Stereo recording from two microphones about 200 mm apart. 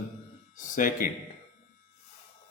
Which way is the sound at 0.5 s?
40° left (ahead or behind).